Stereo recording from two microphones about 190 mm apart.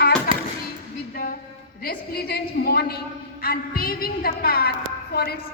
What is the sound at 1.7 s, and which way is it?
A woman's voice, 55° left (ahead or behind).